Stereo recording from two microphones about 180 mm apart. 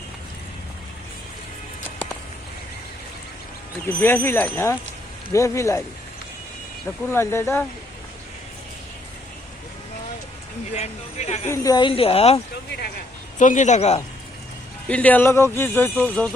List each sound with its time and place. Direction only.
4.0 s speech: 10° left (ahead or behind)
7.1 s speech: 15° left (ahead or behind)
10.8 s speech: 35° left (ahead or behind)
11.4 s a woman's voice: 15° left (ahead or behind); by 12.4 s 35° left (ahead or behind)
13.4 s speech: 45° left (ahead or behind)
14.8 s speech: 10° left (ahead or behind)